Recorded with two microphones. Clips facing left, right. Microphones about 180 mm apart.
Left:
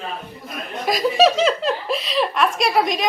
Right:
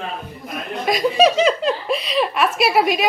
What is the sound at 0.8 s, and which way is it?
Speech, centre (ahead or behind).